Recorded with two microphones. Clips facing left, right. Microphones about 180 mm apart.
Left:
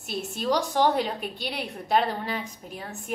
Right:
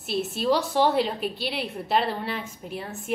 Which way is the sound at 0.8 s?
45° left (ahead or behind).